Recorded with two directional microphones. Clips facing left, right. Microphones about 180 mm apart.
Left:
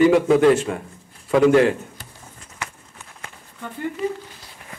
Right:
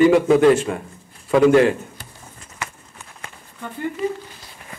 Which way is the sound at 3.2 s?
15° right (ahead or behind).